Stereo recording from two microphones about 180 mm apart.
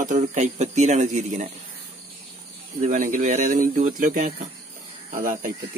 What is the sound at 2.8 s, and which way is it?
Speech, 45° right (ahead or behind).